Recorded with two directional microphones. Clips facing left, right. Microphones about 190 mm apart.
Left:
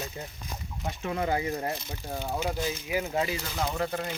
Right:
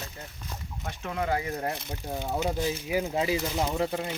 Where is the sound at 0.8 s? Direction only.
20° left (ahead or behind).